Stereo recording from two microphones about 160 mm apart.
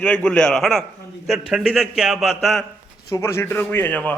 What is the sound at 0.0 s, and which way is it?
A man's voice, 5° left (ahead or behind).